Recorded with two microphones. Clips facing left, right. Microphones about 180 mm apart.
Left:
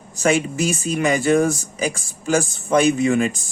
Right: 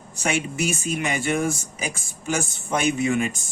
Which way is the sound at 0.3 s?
35° left (ahead or behind).